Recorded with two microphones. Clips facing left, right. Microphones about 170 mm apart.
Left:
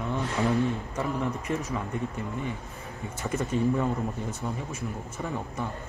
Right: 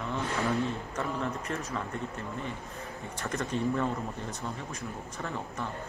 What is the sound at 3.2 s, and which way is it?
Speech, 10° left (ahead or behind).